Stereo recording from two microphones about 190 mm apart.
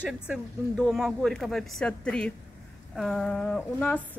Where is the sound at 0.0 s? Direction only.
Centre (ahead or behind).